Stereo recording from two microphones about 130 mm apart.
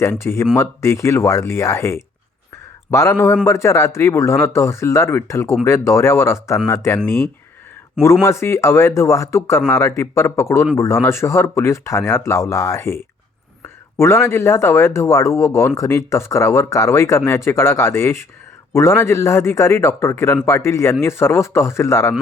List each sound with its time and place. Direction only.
0.0 s speech: 20° left (ahead or behind)
8.2 s speech: 20° left (ahead or behind)